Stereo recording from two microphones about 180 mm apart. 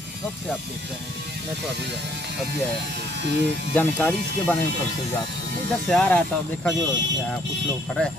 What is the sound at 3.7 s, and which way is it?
Speech, 10° left (ahead or behind).